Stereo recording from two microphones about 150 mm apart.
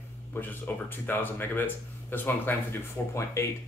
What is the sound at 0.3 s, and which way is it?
Speech, 10° left (ahead or behind).